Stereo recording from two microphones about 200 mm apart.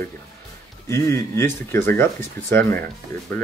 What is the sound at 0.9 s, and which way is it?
Speech, 15° left (ahead or behind).